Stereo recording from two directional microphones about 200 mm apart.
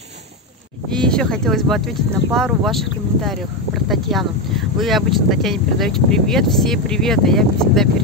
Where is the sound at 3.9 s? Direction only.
Centre (ahead or behind).